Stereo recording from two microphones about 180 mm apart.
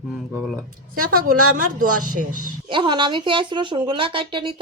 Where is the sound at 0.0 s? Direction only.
5° right (ahead or behind).